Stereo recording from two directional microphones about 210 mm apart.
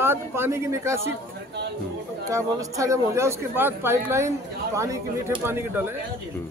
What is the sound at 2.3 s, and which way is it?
Speech, 15° right (ahead or behind).